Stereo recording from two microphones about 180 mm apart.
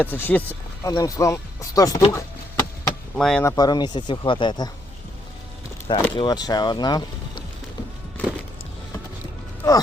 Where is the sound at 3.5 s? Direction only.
20° left (ahead or behind).